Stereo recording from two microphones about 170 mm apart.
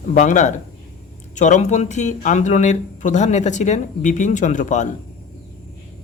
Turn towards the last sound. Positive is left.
turn(degrees=45)  # may be behind; listen again after turning